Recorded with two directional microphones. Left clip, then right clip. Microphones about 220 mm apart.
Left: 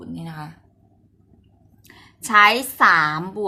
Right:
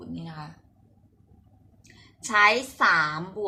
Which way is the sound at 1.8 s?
35° left (ahead or behind).